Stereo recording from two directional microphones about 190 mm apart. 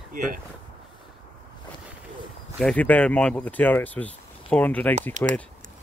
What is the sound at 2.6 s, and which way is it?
Speech, 5° left (ahead or behind).